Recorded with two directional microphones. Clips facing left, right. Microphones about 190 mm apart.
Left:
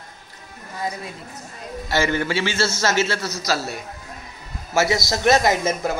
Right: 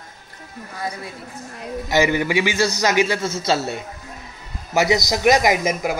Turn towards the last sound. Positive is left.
turn(degrees=-15)  # may be behind; listen again after turning